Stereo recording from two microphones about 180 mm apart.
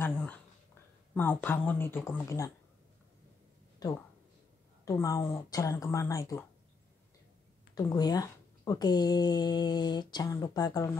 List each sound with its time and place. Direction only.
0.0 s a sound: 10° left (ahead or behind)
1.1 s speech: 10° left (ahead or behind)
4.8 s speech: 15° left (ahead or behind)
7.7 s speech: 20° left (ahead or behind)